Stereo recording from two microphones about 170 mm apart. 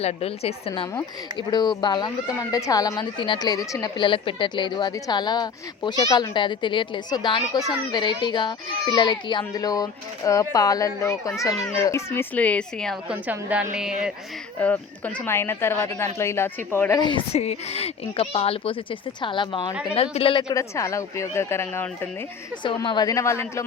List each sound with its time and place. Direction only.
0.0 s a woman's voice: 35° left (ahead or behind)
0.7 s speech: 25° left (ahead or behind); by 13.0 s 5° left (ahead or behind)
13.1 s a woman's voice: 10° right (ahead or behind)
14.6 s speech: 10° left (ahead or behind)
17.0 s a woman's voice: 30° left (ahead or behind)
20.5 s speech: 20° left (ahead or behind)
22.6 s speech: 30° left (ahead or behind)